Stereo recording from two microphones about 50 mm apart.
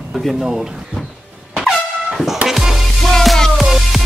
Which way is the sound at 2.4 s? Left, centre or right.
Centre.